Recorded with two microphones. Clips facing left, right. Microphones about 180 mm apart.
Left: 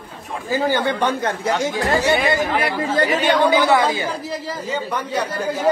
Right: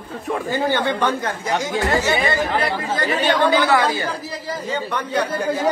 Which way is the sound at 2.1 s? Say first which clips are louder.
Left 1 dB; 5° left (ahead or behind).